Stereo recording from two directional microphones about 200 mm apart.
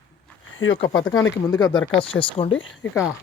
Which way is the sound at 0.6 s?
75° left (ahead or behind).